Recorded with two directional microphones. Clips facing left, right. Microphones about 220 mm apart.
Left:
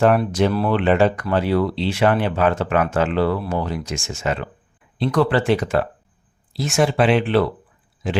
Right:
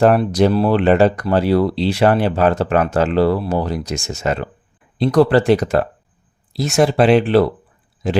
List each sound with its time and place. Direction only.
0.0 s speech: 35° right (ahead or behind)